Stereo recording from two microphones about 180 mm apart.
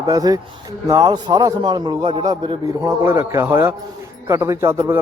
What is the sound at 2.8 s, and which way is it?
A man's voice, 15° right (ahead or behind).